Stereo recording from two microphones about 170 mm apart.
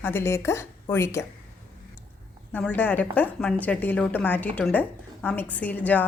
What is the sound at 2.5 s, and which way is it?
A woman's voice, 10° left (ahead or behind).